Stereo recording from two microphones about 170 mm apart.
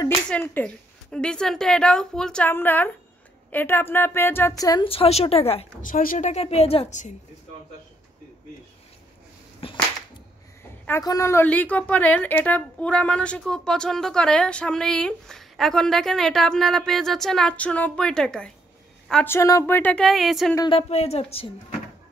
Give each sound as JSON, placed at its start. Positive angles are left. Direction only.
{"t": 0.3, "sound": "a woman's voice", "side_deg": 10}
{"t": 4.8, "sound": "a woman's voice", "side_deg": 35}
{"t": 5.8, "sound": "a woman's voice", "side_deg": 50}
{"t": 9.6, "sound": "a sound", "side_deg": 35}
{"t": 10.9, "sound": "a woman's voice", "side_deg": 20}
{"t": 19.3, "sound": "a woman's voice", "side_deg": 15}
{"t": 20.5, "sound": "speech", "side_deg": 25}
{"t": 20.9, "sound": "a woman's voice", "side_deg": 35}